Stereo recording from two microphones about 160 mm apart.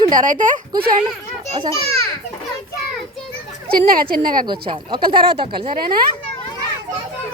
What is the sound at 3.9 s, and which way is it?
Speech, 65° right (ahead or behind).